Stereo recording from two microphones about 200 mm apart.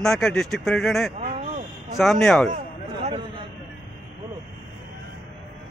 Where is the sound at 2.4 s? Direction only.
35° right (ahead or behind).